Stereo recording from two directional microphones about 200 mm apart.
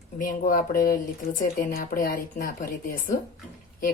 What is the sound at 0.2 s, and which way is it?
Speech, 45° left (ahead or behind).